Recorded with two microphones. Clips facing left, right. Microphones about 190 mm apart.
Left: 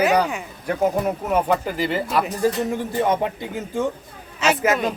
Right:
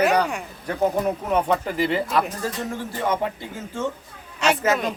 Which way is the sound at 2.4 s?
20° left (ahead or behind).